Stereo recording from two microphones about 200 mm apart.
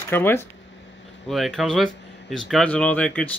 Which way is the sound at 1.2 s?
Centre (ahead or behind).